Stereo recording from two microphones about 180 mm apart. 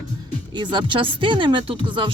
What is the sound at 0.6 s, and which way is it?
Speech, 25° right (ahead or behind).